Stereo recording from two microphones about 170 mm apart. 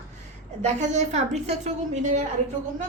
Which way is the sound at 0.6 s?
40° right (ahead or behind).